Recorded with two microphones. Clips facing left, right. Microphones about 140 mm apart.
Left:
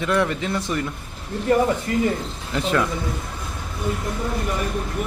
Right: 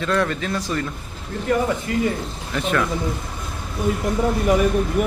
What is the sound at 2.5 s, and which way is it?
Speech, 20° left (ahead or behind).